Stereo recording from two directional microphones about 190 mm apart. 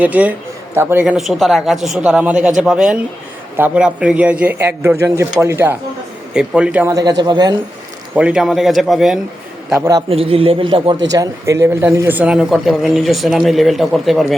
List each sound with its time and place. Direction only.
0.0 s a man's voice: 10° right (ahead or behind)
6.9 s a man's voice: 20° right (ahead or behind)
8.1 s speech: 5° right (ahead or behind)
10.1 s a man's voice: 30° right (ahead or behind)
11.1 s speech: 15° right (ahead or behind); by 14.3 s centre (ahead or behind)